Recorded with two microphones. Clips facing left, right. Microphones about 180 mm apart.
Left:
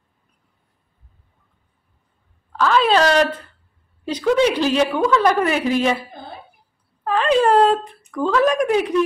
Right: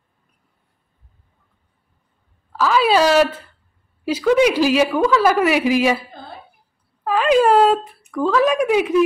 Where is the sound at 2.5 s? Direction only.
5° right (ahead or behind).